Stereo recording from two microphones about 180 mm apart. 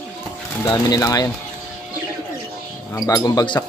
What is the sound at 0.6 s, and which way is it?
Speech, 20° left (ahead or behind).